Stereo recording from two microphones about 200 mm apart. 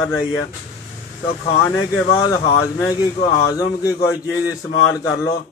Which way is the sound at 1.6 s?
5° left (ahead or behind).